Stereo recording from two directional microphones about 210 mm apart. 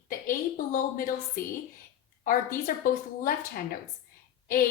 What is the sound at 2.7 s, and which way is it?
A woman's voice, 45° left (ahead or behind).